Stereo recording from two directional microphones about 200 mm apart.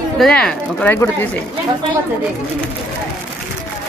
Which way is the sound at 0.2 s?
5° left (ahead or behind).